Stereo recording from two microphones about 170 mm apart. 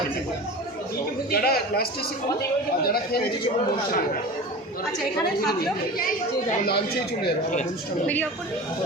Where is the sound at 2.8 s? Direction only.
60° left (ahead or behind).